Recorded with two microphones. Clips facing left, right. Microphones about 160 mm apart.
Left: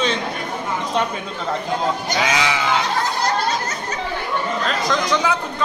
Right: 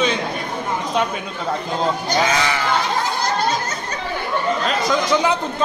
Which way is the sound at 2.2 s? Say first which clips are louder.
Even; 5° left (ahead or behind).